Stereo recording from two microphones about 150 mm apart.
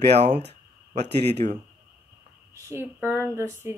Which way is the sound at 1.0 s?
90° right.